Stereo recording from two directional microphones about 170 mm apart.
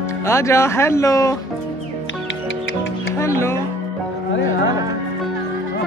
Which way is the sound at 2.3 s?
90° left.